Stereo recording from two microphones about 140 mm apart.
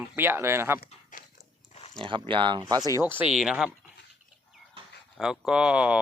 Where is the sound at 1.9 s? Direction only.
35° right (ahead or behind).